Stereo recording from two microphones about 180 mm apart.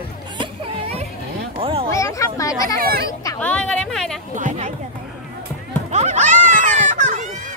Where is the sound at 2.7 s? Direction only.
55° right (ahead or behind).